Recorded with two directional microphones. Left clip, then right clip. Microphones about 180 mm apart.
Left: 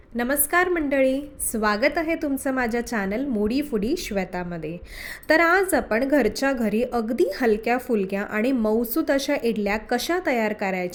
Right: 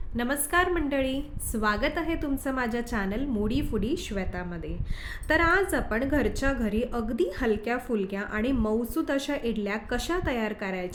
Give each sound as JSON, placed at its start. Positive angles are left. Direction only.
{"t": 0.2, "sound": "a woman's voice", "side_deg": 25}